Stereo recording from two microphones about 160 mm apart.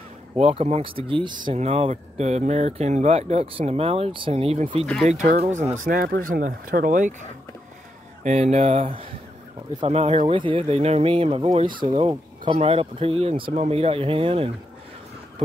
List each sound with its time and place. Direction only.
0.4 s speech: 40° right (ahead or behind)
5.0 s speech: 50° right (ahead or behind)
8.2 s speech: 45° right (ahead or behind)